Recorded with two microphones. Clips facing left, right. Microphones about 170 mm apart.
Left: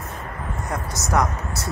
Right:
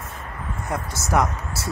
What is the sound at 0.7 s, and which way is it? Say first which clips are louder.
Speech: right 1 dB; 25° right (ahead or behind).